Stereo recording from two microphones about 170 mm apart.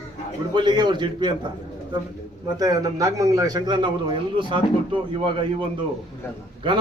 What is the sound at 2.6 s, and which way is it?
A man's voice, 20° right (ahead or behind).